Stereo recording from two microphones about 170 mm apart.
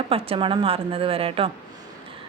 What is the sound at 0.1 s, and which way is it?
Speech, 35° right (ahead or behind).